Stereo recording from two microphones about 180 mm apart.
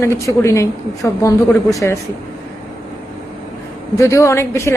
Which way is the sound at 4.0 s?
15° left (ahead or behind).